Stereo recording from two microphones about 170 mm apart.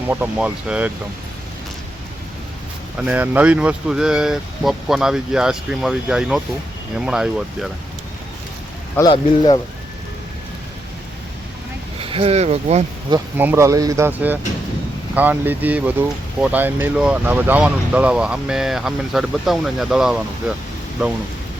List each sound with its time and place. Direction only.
0.1 s speech: 10° right (ahead or behind)
3.0 s speech: 10° right (ahead or behind)
9.0 s speech: 25° left (ahead or behind)
11.9 s speech: 35° right (ahead or behind)
13.3 s speech: 10° right (ahead or behind)